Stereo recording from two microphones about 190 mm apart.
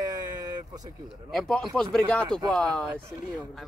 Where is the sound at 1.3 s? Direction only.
Centre (ahead or behind).